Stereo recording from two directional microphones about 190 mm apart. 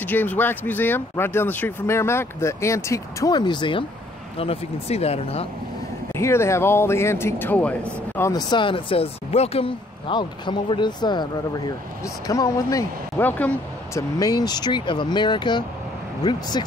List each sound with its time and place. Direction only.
0.0 s speech: 10° left (ahead or behind); by 5.5 s 30° left (ahead or behind)
6.1 s speech: 15° left (ahead or behind)
8.2 s speech: 20° left (ahead or behind)